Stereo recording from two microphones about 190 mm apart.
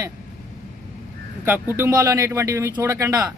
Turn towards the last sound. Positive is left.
turn(degrees=-15)  # may be behind; listen again after turning